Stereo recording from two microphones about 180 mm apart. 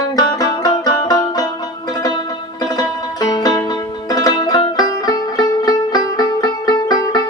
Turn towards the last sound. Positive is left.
turn(degrees=20)  # may be behind; listen again after turning